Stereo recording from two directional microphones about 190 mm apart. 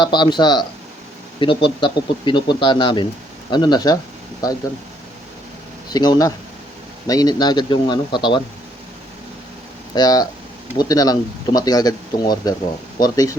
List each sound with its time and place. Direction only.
0.0 s speech: 25° left (ahead or behind)
5.9 s speech: 20° left (ahead or behind)
9.9 s speech: 20° left (ahead or behind)